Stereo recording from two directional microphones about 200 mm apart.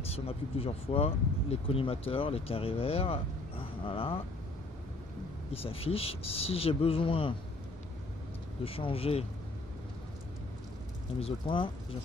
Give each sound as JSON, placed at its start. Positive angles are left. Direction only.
{"t": 0.1, "sound": "speech", "side_deg": 30}
{"t": 5.5, "sound": "speech", "side_deg": 30}
{"t": 8.6, "sound": "speech", "side_deg": 30}
{"t": 11.1, "sound": "speech", "side_deg": 25}